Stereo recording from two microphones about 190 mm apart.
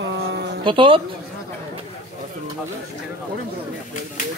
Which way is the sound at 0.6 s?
25° right (ahead or behind).